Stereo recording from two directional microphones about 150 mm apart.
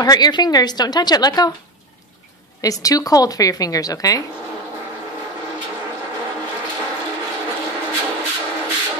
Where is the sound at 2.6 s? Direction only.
25° left (ahead or behind).